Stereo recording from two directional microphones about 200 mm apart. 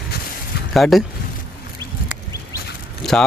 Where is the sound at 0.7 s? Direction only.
Centre (ahead or behind).